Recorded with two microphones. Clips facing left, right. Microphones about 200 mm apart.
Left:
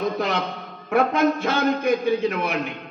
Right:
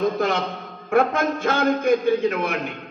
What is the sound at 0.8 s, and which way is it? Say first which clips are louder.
A man's voice: even; 50° right (ahead or behind).